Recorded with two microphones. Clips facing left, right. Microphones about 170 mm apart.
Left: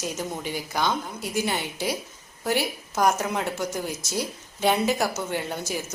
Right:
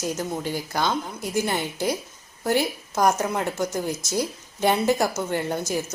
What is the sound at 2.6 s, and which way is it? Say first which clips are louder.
Speech: right 2 dB; 15° right (ahead or behind).